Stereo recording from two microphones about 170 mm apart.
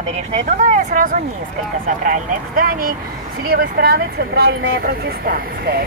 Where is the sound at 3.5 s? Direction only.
65° right (ahead or behind).